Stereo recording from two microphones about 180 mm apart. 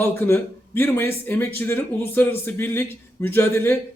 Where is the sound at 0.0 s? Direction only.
10° left (ahead or behind).